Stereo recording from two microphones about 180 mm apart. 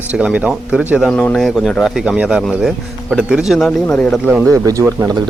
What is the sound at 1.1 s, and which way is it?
Speech, 5° left (ahead or behind).